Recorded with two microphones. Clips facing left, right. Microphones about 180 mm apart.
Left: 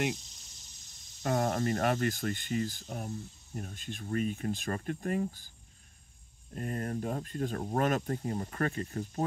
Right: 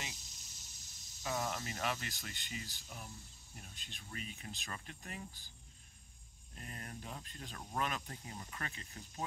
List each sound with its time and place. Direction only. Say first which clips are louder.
1.2 s speech: left 10 dB; 55° left (ahead or behind)
6.5 s speech: left 15 dB; 45° left (ahead or behind)